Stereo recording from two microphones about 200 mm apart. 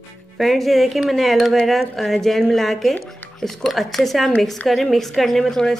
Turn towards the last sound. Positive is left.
turn(degrees=0)  # may be behind; listen again after turning